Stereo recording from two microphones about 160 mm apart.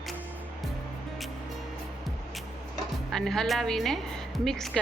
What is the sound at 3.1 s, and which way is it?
Speech, centre (ahead or behind).